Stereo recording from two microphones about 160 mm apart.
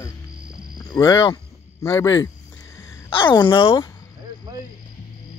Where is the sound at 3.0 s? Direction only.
30° left (ahead or behind).